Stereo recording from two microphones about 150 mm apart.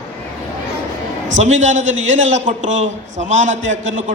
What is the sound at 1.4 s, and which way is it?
A man's voice, 55° right (ahead or behind).